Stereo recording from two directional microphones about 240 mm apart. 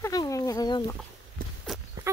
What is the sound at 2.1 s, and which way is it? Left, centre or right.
Speech, centre.